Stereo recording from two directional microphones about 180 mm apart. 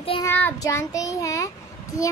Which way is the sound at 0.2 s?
10° left (ahead or behind).